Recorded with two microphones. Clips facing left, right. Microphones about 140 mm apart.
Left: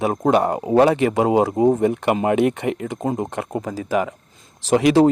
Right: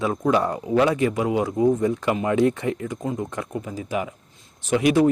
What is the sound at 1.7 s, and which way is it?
Speech, 65° left (ahead or behind).